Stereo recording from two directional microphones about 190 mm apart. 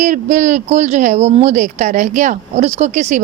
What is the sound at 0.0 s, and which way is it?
Speech, 40° right (ahead or behind).